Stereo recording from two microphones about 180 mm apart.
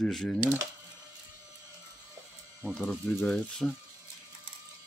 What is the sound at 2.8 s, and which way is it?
Speech, 5° left (ahead or behind).